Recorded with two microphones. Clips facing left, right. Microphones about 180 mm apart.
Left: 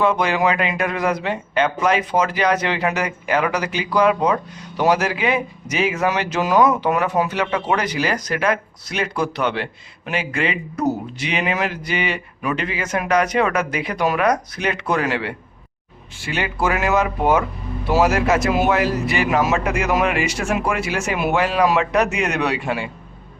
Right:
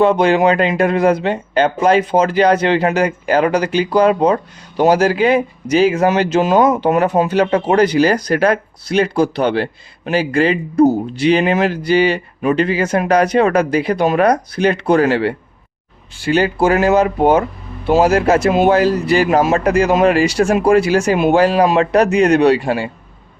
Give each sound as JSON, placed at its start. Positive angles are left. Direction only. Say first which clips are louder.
{"t": 0.0, "sound": "speech", "louder": "right 6 dB", "side_deg": -30}